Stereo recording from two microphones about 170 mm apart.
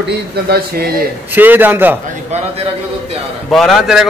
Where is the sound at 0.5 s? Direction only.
65° right (ahead or behind).